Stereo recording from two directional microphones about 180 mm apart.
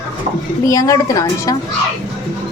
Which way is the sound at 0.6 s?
20° left (ahead or behind).